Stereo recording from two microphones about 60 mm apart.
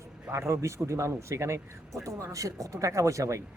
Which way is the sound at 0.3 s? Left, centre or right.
Right.